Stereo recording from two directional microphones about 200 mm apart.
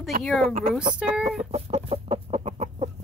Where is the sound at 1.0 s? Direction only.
5° right (ahead or behind).